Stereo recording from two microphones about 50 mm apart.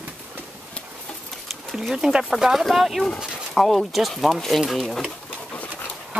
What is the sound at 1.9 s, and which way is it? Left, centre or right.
Speech, centre.